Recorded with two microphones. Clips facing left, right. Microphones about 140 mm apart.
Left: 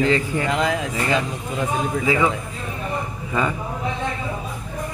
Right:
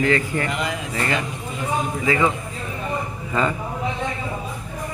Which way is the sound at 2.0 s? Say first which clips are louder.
Even; 10° left (ahead or behind).